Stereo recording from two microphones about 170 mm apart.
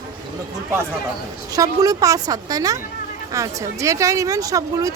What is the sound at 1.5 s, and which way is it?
Speech, 20° right (ahead or behind).